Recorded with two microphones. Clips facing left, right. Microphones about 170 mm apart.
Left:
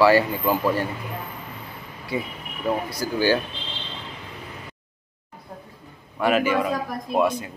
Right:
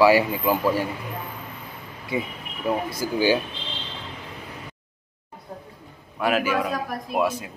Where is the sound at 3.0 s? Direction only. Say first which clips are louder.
Even; 15° right (ahead or behind).